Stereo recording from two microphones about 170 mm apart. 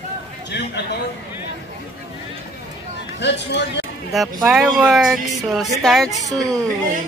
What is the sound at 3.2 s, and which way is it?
Speech, 90° left.